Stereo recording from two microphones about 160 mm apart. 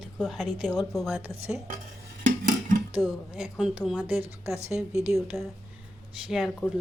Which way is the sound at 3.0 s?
5° right (ahead or behind).